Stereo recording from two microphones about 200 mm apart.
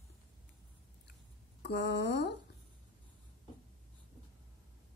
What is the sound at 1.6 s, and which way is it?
Speech, 55° left (ahead or behind).